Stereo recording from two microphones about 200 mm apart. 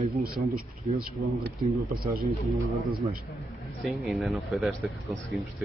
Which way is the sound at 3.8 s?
Centre (ahead or behind).